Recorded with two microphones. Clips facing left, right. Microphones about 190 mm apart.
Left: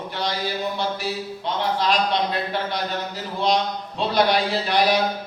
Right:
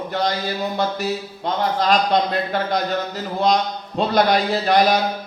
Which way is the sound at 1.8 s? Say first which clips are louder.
Right 5 dB; 45° right (ahead or behind).